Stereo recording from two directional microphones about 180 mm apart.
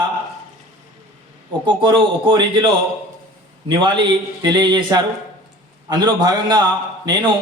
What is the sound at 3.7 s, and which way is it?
A man's voice, 25° right (ahead or behind).